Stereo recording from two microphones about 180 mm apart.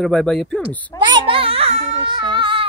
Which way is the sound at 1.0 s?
25° right (ahead or behind).